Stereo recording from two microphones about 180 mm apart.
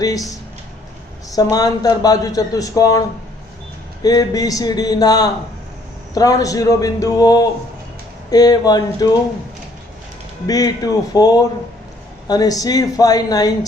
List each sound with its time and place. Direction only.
0.0 s speech: 20° left (ahead or behind)
1.4 s speech: 20° left (ahead or behind)
4.0 s speech: 20° left (ahead or behind)
10.4 s speech: 20° left (ahead or behind)